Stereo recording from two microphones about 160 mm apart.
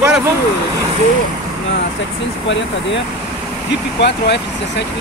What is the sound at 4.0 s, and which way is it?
Speech, 90° left.